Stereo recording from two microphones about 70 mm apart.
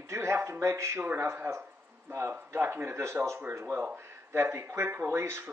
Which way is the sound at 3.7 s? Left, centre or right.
Right.